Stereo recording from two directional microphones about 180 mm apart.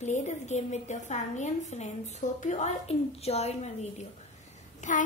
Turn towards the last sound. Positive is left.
turn(degrees=40)  # may be behind; listen again after turning